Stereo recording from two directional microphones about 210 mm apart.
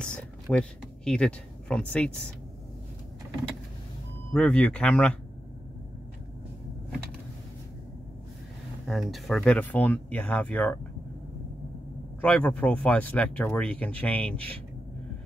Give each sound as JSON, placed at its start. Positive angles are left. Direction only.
{"t": 0.0, "sound": "speech", "side_deg": 5}
{"t": 4.3, "sound": "speech", "side_deg": 5}
{"t": 8.8, "sound": "speech", "side_deg": 0}
{"t": 12.2, "sound": "speech", "side_deg": 5}